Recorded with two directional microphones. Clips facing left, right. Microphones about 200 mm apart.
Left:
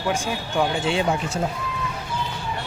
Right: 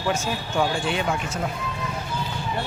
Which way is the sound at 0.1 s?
20° left (ahead or behind).